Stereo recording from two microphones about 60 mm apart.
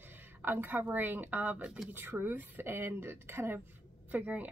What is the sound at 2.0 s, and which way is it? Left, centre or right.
A woman's voice, right.